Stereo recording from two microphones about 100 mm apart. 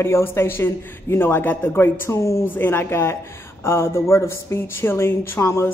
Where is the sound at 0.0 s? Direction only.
25° left (ahead or behind).